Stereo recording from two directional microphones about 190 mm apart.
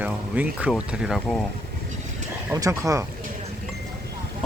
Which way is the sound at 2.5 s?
15° right (ahead or behind).